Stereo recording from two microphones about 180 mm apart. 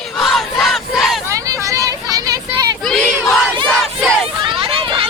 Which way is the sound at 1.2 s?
15° right (ahead or behind).